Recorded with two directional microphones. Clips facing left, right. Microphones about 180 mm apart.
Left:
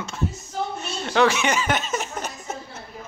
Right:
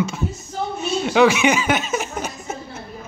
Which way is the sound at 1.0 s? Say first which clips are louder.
Right 5 dB; 10° right (ahead or behind).